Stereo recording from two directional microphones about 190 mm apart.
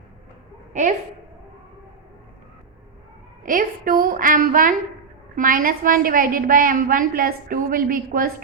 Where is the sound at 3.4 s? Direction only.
45° right (ahead or behind).